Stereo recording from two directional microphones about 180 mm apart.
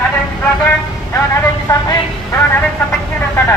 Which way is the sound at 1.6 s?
15° left (ahead or behind).